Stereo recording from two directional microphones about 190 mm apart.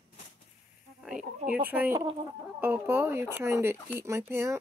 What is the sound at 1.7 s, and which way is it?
Speech, 10° right (ahead or behind).